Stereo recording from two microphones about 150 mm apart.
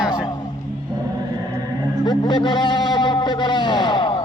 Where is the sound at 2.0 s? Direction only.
30° left (ahead or behind).